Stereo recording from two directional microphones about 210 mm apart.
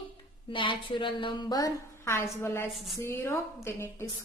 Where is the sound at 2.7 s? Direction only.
Centre (ahead or behind).